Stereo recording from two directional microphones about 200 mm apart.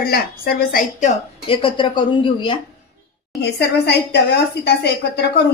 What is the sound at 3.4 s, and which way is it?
A woman's voice, 55° left (ahead or behind).